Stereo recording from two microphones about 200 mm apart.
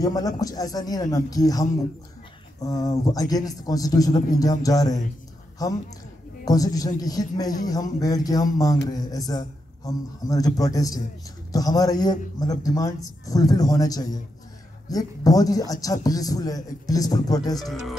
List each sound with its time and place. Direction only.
0.0 s a man's voice: 20° left (ahead or behind)
17.6 s speech: centre (ahead or behind)